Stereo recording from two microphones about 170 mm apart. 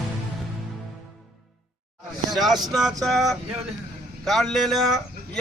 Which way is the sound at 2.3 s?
Centre (ahead or behind).